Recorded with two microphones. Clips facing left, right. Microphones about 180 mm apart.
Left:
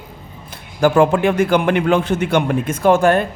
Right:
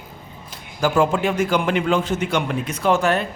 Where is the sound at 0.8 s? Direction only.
60° left (ahead or behind).